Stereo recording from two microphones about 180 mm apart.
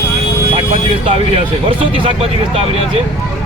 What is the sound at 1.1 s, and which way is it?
Speech, 30° right (ahead or behind).